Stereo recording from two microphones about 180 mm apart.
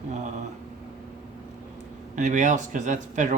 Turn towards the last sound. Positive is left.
turn(degrees=-40)  # may be behind; listen again after turning